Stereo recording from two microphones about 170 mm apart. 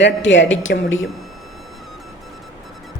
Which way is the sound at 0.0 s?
90° left.